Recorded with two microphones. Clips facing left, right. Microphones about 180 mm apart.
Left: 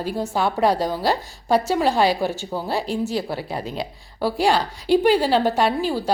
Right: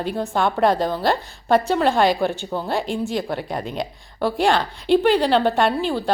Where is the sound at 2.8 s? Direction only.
40° left (ahead or behind).